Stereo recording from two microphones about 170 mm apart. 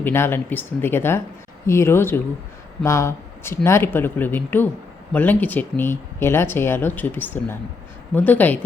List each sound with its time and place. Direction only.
0.0 s speech: 15° left (ahead or behind)